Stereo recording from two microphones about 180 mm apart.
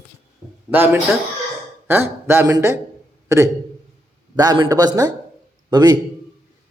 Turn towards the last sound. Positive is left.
turn(degrees=-25)  # may be behind; listen again after turning